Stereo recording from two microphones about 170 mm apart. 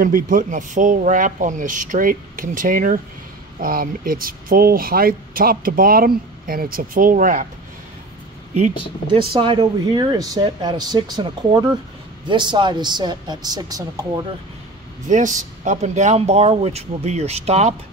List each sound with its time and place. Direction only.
0.0 s speech: 55° right (ahead or behind)
9.1 s speech: 30° right (ahead or behind)
15.0 s speech: 50° right (ahead or behind)